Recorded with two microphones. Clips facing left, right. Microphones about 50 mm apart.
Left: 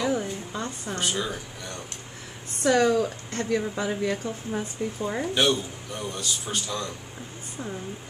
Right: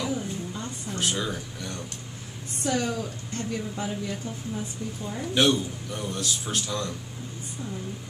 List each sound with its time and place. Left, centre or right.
0.5 s a sound: left
0.9 s a man's voice: centre
2.6 s a woman's voice: left
4.6 s speech: left
5.2 s a man's voice: centre